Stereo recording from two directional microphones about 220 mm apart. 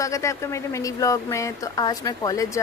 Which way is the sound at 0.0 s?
15° left (ahead or behind).